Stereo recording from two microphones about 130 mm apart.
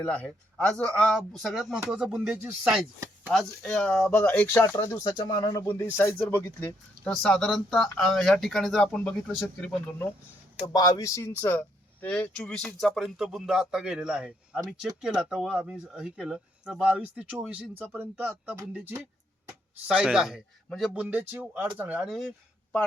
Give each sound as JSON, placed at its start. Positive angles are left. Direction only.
{"t": 0.0, "sound": "speech", "side_deg": 5}
{"t": 4.8, "sound": "speech", "side_deg": 30}
{"t": 5.6, "sound": "speech", "side_deg": 15}
{"t": 10.7, "sound": "speech", "side_deg": 30}
{"t": 20.9, "sound": "speech", "side_deg": -10}
{"t": 22.0, "sound": "speech", "side_deg": 0}